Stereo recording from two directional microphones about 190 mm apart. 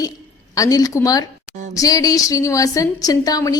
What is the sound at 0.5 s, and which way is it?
A woman's voice, 20° left (ahead or behind).